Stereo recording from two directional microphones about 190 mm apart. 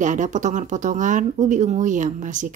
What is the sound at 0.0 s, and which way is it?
Speech, 40° right (ahead or behind).